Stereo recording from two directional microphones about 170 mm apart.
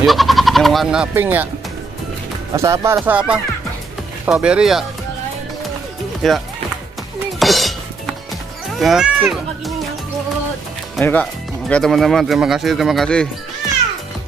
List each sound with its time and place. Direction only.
0.0 s speech: centre (ahead or behind)
2.5 s speech: 15° right (ahead or behind)
3.0 s speech: 5° right (ahead or behind)
6.2 s speech: centre (ahead or behind)
7.3 s dishes: centre (ahead or behind)
8.7 s speech: centre (ahead or behind)
11.0 s speech: 10° left (ahead or behind)